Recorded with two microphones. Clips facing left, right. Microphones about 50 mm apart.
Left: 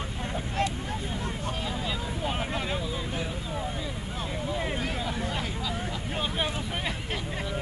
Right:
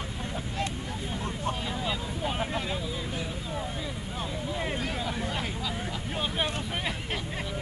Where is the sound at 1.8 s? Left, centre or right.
Centre.